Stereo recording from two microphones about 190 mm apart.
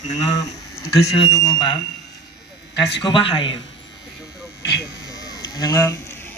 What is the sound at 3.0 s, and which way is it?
Speech, 25° left (ahead or behind).